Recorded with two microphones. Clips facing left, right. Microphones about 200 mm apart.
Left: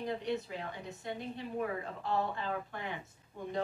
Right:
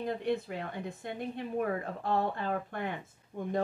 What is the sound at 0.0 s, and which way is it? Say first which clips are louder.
A woman's voice: right 3 dB; 50° right (ahead or behind).